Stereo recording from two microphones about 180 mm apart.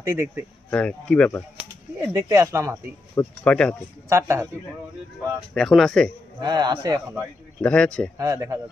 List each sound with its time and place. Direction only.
0.0 s speech: 10° right (ahead or behind)
0.7 s speech: 5° left (ahead or behind)
2.0 s speech: 15° right (ahead or behind)
3.2 s speech: 5° left (ahead or behind)
4.1 s speech: 15° right (ahead or behind)
5.5 s speech: centre (ahead or behind)
6.4 s a man's voice: 20° right (ahead or behind)
7.6 s speech: 5° left (ahead or behind)
8.2 s a man's voice: 20° right (ahead or behind)